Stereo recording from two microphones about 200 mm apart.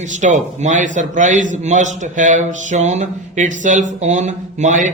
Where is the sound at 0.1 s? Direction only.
40° right (ahead or behind).